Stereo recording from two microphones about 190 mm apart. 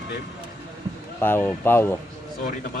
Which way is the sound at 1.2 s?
10° left (ahead or behind).